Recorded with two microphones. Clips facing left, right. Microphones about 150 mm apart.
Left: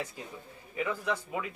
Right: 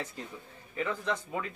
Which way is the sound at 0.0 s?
10° left (ahead or behind).